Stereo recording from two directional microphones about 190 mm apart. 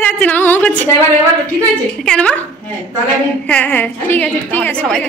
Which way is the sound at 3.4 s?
5° left (ahead or behind).